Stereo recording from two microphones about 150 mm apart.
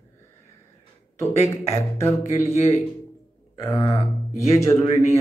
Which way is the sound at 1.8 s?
15° left (ahead or behind).